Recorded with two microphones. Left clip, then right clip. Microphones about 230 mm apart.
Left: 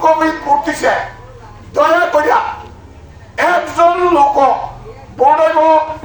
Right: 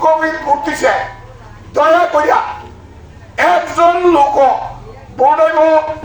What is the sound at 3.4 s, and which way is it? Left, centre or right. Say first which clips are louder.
A man's voice: right 1 dB; right.